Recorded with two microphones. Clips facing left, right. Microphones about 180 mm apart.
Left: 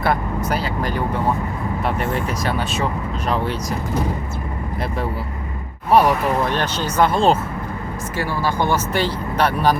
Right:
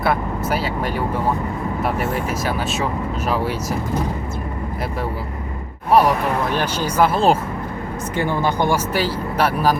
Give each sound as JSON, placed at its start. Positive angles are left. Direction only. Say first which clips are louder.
{"t": 0.0, "sound": "speech", "louder": "even", "side_deg": -5}
{"t": 5.9, "sound": "speech", "louder": "even", "side_deg": 0}
{"t": 8.1, "sound": "speech", "louder": "right 2 dB", "side_deg": -20}